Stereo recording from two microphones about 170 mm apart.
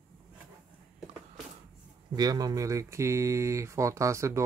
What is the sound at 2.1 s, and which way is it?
Speech, 20° right (ahead or behind).